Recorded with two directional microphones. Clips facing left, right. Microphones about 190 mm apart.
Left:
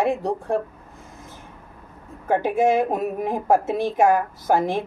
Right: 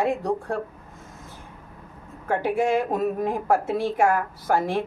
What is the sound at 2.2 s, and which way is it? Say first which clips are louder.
Speech: left 3 dB; 20° left (ahead or behind).